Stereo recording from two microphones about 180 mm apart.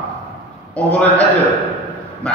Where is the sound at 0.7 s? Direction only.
5° left (ahead or behind).